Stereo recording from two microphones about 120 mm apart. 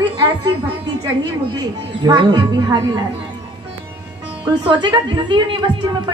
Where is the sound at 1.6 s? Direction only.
35° right (ahead or behind).